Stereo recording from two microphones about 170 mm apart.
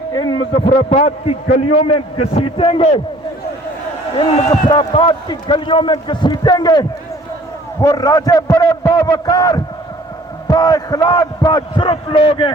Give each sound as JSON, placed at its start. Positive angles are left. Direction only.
{"t": 0.1, "sound": "a man's voice", "side_deg": 25}
{"t": 4.7, "sound": "a man's voice", "side_deg": 25}